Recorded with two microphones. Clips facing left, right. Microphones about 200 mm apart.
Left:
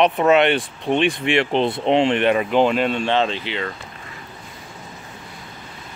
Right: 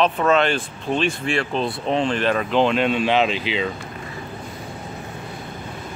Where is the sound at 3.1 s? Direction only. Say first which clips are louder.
Right 1 dB; 10° right (ahead or behind).